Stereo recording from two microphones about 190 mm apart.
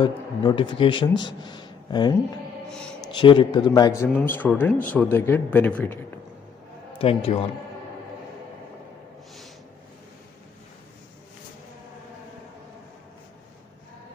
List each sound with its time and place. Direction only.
0.0 s a man's voice: 25° left (ahead or behind); by 5.9 s 10° left (ahead or behind)
7.0 s a man's voice: 30° left (ahead or behind)